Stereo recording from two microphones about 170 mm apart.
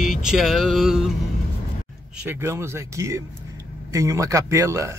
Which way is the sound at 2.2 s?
15° right (ahead or behind).